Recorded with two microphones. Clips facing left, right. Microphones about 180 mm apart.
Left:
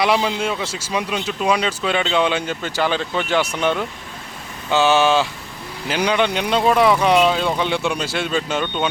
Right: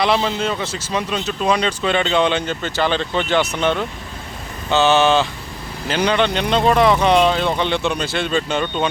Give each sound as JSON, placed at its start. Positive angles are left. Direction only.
{"t": 0.0, "sound": "speech", "side_deg": 10}